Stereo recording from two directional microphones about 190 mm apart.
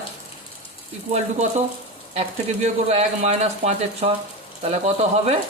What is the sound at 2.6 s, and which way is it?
Speech, 35° right (ahead or behind).